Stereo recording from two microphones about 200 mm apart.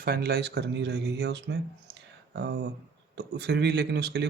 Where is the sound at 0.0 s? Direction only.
50° right (ahead or behind).